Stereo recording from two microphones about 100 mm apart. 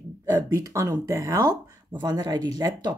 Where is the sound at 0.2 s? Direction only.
35° right (ahead or behind).